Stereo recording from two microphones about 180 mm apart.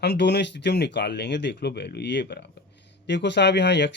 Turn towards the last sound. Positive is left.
turn(degrees=75)  # may be behind; listen again after turning